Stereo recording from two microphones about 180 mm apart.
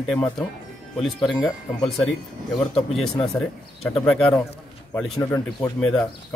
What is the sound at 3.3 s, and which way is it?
Speech, 5° left (ahead or behind).